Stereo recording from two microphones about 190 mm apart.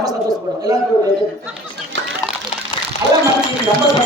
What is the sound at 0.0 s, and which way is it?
Speech, 20° right (ahead or behind).